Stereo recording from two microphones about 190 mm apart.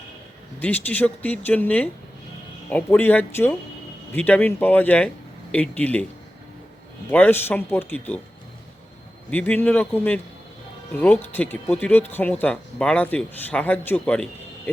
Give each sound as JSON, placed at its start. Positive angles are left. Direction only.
{"t": 0.6, "sound": "speech", "side_deg": 10}
{"t": 7.1, "sound": "speech", "side_deg": 10}
{"t": 9.3, "sound": "speech", "side_deg": 10}